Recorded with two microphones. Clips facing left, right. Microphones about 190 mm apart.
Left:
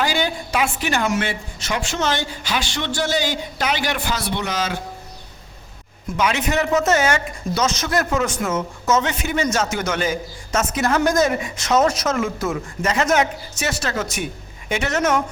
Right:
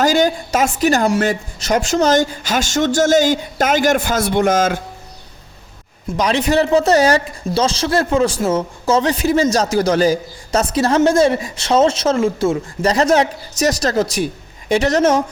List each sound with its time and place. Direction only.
0.0 s a woman's voice: 45° right (ahead or behind)
6.1 s speech: 35° right (ahead or behind)